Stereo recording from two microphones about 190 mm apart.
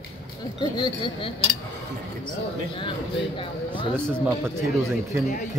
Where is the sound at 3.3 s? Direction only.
25° left (ahead or behind).